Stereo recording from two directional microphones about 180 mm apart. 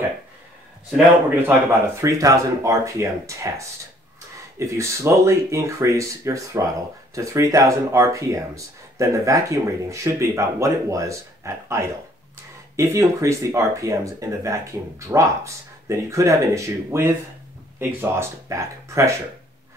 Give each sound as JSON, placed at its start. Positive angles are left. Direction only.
{"t": 1.5, "sound": "speech", "side_deg": -15}